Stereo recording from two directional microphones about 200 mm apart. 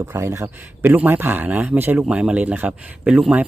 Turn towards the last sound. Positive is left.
turn(degrees=-5)  # may be behind; listen again after turning